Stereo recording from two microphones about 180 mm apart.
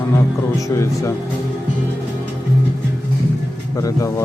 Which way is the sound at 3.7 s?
20° left (ahead or behind).